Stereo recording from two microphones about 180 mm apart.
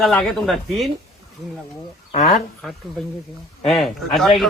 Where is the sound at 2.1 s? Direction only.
40° left (ahead or behind).